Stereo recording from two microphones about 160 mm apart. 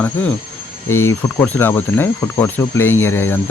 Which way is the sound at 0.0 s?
10° left (ahead or behind).